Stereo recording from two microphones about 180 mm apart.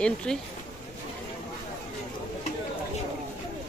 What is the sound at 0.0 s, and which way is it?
Speech, 5° left (ahead or behind).